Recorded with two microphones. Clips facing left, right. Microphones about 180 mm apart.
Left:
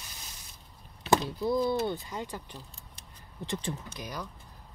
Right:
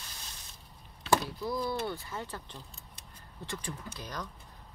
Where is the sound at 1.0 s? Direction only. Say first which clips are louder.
Left 3 dB; 20° left (ahead or behind).